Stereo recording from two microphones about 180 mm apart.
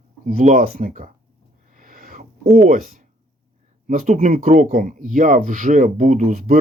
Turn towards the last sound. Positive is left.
turn(degrees=-50)  # may be behind; listen again after turning